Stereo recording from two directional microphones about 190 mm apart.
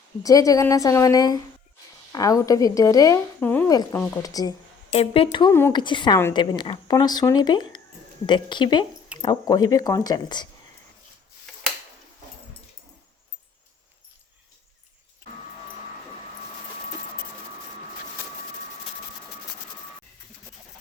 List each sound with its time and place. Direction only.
0.2 s a woman's voice: 20° left (ahead or behind)
4.9 s speech: 30° left (ahead or behind)
5.5 s a woman's voice: 10° left (ahead or behind)
5.7 s speech: 25° left (ahead or behind)